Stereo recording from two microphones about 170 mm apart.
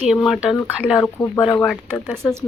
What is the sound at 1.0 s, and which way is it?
Speech, 15° left (ahead or behind).